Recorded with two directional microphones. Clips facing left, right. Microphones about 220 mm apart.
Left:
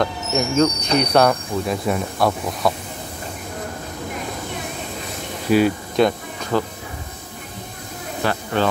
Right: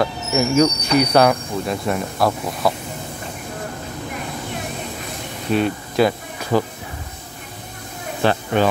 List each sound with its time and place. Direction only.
0.0 s speech: 5° right (ahead or behind)
5.5 s speech: centre (ahead or behind)
8.2 s speech: 25° right (ahead or behind)